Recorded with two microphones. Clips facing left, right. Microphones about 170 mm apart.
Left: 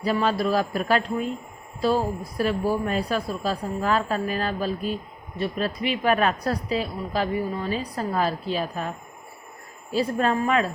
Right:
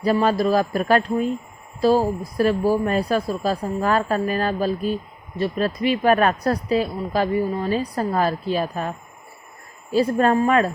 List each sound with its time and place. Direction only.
0.0 s speech: 45° right (ahead or behind)
9.9 s speech: 45° right (ahead or behind)